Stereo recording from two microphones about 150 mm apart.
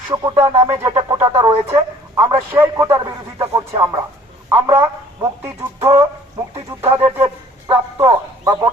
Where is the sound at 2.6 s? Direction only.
15° right (ahead or behind).